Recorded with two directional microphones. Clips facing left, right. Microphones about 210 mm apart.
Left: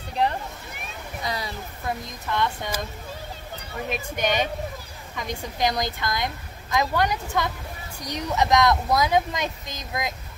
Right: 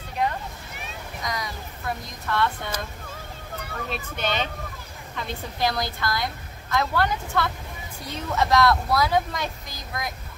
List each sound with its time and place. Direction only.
1.2 s a sound: 30° left (ahead or behind)
2.2 s a woman's voice: 15° left (ahead or behind)
3.9 s a woman's voice: 15° left (ahead or behind)